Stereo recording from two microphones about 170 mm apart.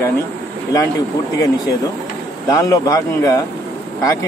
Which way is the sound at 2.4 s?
20° left (ahead or behind).